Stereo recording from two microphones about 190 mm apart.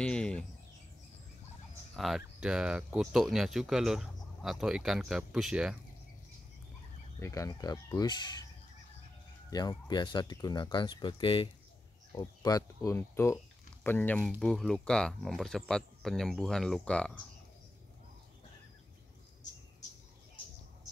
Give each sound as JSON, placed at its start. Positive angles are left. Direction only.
{"t": 0.0, "sound": "a sound", "side_deg": 5}
{"t": 2.0, "sound": "speech", "side_deg": 0}
{"t": 7.2, "sound": "speech", "side_deg": 15}
{"t": 9.5, "sound": "speech", "side_deg": 20}